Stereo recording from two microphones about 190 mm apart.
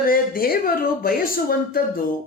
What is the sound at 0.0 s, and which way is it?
Speech, 50° left (ahead or behind).